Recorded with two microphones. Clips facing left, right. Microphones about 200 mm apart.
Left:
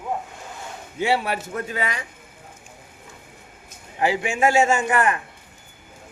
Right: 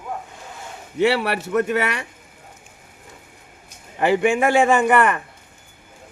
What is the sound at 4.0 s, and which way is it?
A man's voice, 60° right (ahead or behind).